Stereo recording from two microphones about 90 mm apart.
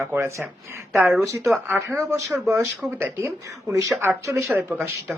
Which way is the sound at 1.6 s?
25° right (ahead or behind).